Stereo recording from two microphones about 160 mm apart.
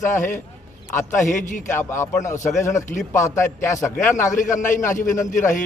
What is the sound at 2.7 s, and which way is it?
Speech, 50° left (ahead or behind).